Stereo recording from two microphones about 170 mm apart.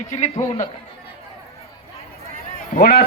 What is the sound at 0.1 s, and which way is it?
Speech, 40° left (ahead or behind).